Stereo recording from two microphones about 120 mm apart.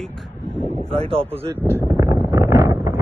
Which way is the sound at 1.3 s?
15° right (ahead or behind).